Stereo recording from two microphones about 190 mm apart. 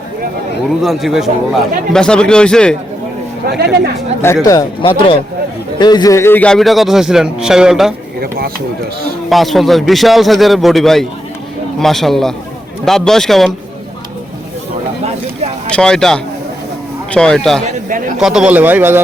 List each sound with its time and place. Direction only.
0.7 s a man's voice: centre (ahead or behind)
4.4 s a man's voice: 20° left (ahead or behind); by 7.9 s 5° right (ahead or behind)
9.3 s a man's voice: centre (ahead or behind)
15.7 s a man's voice: 5° left (ahead or behind)